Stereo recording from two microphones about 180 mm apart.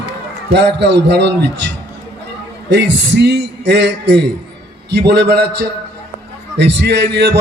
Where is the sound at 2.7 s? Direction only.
75° right (ahead or behind).